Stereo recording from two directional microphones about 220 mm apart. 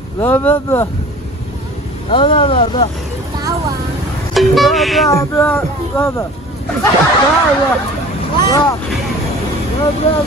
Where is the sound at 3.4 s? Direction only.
15° right (ahead or behind).